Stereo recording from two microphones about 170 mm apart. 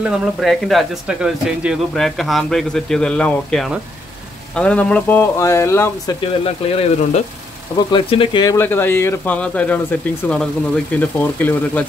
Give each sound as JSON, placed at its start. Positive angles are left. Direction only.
{"t": 0.0, "sound": "speech", "side_deg": -5}
{"t": 6.4, "sound": "speech", "side_deg": 35}
{"t": 8.5, "sound": "speech", "side_deg": 15}